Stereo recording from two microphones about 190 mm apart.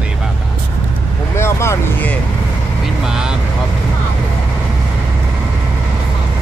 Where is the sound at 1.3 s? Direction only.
15° left (ahead or behind).